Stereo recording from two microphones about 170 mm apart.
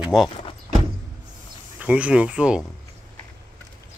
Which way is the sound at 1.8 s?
10° right (ahead or behind).